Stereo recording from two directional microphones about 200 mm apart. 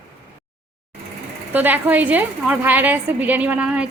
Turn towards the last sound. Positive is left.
turn(degrees=-5)  # may be behind; listen again after turning